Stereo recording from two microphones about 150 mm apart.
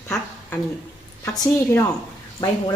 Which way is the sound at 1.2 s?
15° left (ahead or behind).